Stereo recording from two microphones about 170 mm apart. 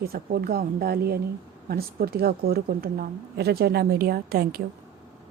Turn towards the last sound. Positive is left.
turn(degrees=-60)  # may be behind; listen again after turning